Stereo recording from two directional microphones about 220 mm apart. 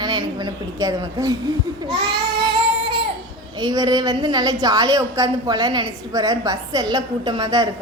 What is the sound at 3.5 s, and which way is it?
A woman's voice, 15° right (ahead or behind).